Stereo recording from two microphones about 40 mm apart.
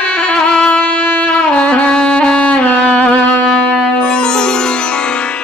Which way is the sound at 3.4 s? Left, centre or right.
Centre.